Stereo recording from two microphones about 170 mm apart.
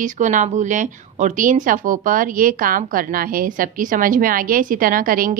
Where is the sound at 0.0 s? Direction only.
50° right (ahead or behind).